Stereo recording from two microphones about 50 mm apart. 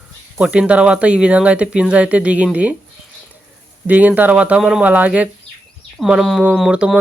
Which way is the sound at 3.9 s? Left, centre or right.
Right.